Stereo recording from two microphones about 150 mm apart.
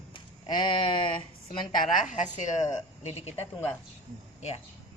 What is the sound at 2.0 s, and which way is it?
Speech, 55° left (ahead or behind).